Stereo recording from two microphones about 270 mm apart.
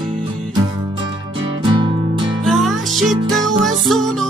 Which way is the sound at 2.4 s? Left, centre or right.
Centre.